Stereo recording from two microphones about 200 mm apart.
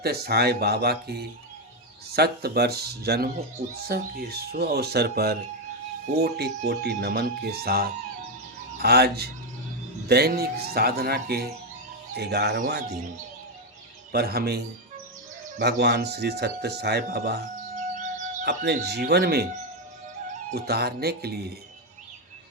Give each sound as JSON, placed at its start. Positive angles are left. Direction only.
{"t": 0.0, "sound": "speech", "side_deg": -50}
{"t": 14.1, "sound": "speech", "side_deg": -50}
{"t": 17.7, "sound": "music", "side_deg": -40}
{"t": 18.4, "sound": "speech", "side_deg": -55}
{"t": 20.6, "sound": "speech", "side_deg": -50}